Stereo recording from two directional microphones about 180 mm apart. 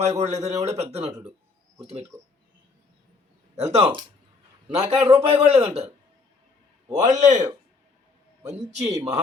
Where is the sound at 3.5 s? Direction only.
35° right (ahead or behind).